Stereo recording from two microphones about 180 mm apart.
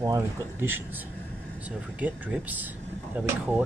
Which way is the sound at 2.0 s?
10° right (ahead or behind).